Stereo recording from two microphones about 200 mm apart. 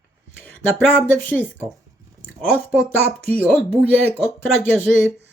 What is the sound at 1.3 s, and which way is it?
Speech, 10° left (ahead or behind).